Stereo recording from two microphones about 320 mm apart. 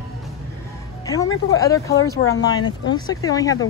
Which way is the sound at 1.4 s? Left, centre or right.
Centre.